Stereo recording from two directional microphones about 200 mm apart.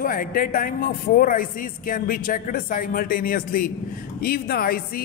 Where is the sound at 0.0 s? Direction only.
45° left (ahead or behind).